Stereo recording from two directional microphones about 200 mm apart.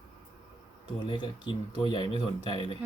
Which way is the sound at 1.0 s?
25° left (ahead or behind).